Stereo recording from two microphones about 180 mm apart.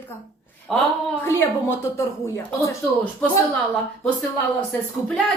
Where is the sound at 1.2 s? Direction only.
10° left (ahead or behind).